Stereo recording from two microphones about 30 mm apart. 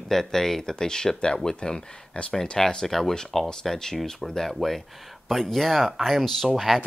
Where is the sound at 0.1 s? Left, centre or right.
Centre; by 2.2 s left.